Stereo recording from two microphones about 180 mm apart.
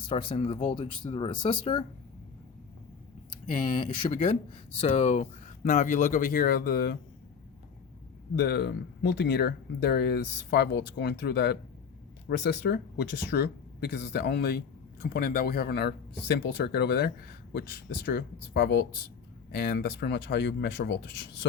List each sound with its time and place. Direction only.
0.1 s speech: 30° left (ahead or behind)
4.0 s speech: 30° left (ahead or behind); by 7.0 s 60° left (ahead or behind)
8.4 s speech: 65° left (ahead or behind)
12.4 s speech: 80° left
15.0 s speech: 55° left (ahead or behind); by 21.0 s 70° left (ahead or behind)